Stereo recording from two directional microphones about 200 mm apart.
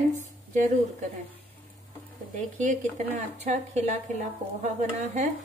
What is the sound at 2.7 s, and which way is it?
A woman's voice, 35° right (ahead or behind).